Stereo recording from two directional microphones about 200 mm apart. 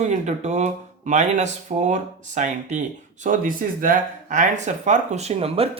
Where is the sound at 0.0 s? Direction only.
35° right (ahead or behind).